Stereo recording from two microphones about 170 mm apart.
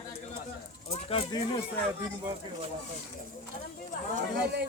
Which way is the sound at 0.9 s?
35° left (ahead or behind).